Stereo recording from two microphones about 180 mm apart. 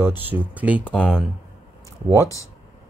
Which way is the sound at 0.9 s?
5° left (ahead or behind).